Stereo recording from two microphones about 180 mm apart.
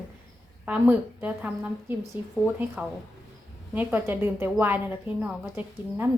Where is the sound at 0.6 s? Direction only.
10° right (ahead or behind).